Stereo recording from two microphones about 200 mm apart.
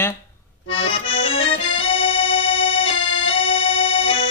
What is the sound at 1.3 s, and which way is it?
Accordion, 25° left (ahead or behind).